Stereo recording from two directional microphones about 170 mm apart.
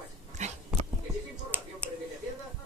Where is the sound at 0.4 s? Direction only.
45° right (ahead or behind).